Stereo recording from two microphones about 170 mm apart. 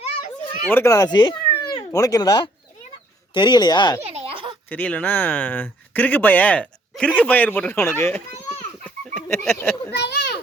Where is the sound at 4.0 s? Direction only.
35° right (ahead or behind).